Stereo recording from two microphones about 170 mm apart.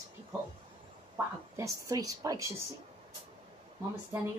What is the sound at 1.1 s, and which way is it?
A woman's voice, 20° right (ahead or behind).